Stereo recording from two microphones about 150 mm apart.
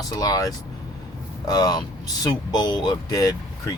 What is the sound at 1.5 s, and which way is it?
Speech, 25° left (ahead or behind).